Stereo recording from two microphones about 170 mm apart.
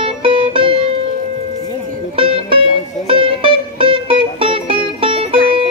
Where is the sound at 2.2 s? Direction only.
30° right (ahead or behind).